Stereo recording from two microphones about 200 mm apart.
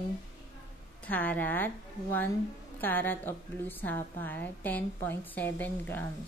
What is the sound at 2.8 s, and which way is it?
A woman's voice, 10° left (ahead or behind).